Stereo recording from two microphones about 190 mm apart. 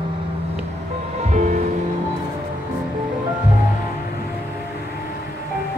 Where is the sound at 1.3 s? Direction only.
40° right (ahead or behind).